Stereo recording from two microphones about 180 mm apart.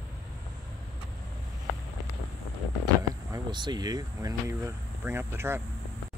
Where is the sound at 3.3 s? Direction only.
25° right (ahead or behind).